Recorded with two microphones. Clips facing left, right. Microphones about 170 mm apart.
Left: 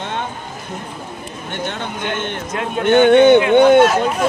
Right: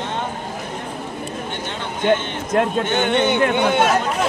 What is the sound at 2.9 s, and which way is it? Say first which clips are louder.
Speech: left 9 dB; 55° left (ahead or behind).